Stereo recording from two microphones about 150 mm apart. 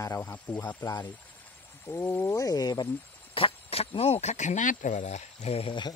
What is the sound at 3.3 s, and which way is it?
Speech, 40° left (ahead or behind).